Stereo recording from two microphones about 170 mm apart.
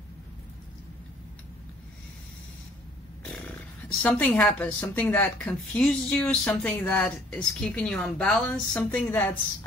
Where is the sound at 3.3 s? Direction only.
5° left (ahead or behind).